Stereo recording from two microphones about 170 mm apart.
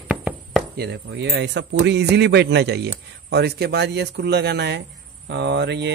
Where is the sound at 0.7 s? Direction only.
80° right.